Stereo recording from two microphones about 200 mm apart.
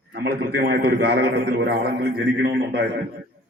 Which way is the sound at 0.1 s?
55° right (ahead or behind).